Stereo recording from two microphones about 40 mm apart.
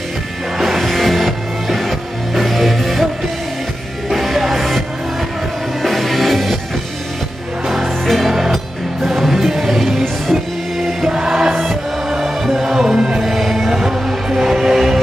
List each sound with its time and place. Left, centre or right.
0.6 s music: centre
4.1 s music: centre
7.6 s music: centre
11.1 s choir: centre
11.5 s music: centre
13.2 s music: centre